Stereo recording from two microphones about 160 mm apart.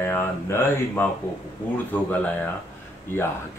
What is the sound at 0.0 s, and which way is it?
Speech, 15° left (ahead or behind).